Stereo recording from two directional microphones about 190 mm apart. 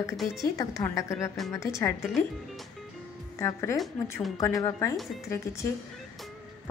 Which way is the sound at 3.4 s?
15° left (ahead or behind).